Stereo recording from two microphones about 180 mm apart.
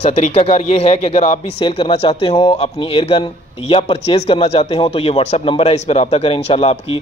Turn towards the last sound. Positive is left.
turn(degrees=30)  # may be behind; listen again after turning